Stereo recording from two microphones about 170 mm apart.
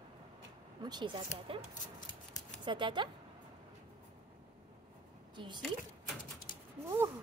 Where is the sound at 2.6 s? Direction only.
30° right (ahead or behind).